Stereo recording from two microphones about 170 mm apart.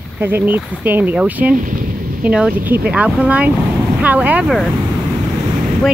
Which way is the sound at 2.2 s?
10° right (ahead or behind).